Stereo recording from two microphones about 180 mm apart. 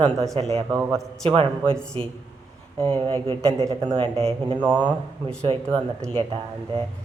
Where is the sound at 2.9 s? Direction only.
25° right (ahead or behind).